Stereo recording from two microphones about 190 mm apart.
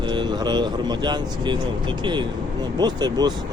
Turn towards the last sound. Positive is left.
turn(degrees=-20)  # may be behind; listen again after turning